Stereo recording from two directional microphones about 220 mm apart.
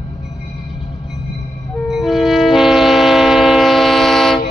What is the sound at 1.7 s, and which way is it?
Train, centre (ahead or behind).